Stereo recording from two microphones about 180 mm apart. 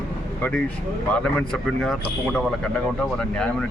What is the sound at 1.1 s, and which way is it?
Speech, 5° left (ahead or behind).